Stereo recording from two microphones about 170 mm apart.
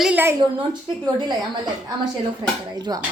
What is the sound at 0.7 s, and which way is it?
Speech, 25° right (ahead or behind).